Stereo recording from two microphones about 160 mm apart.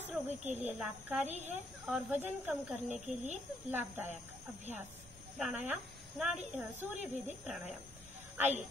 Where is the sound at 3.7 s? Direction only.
10° right (ahead or behind).